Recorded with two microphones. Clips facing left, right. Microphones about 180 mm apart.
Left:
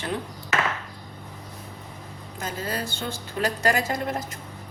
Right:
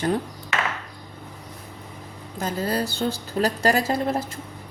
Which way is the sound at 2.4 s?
35° right (ahead or behind).